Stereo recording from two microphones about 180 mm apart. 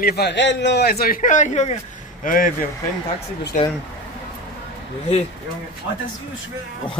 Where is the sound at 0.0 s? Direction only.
65° left (ahead or behind).